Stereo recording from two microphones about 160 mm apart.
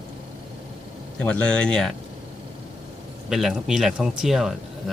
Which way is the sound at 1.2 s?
5° left (ahead or behind).